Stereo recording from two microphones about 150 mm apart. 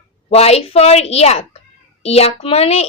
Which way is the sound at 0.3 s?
45° left (ahead or behind).